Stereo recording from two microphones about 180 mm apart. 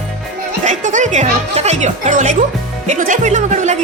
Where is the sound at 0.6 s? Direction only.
45° right (ahead or behind).